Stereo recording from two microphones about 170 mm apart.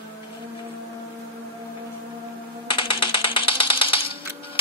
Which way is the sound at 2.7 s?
30° left (ahead or behind).